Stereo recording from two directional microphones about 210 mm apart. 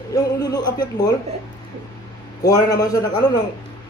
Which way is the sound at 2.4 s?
15° left (ahead or behind).